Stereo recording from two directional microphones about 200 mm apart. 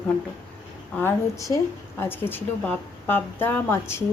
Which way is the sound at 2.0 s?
10° left (ahead or behind).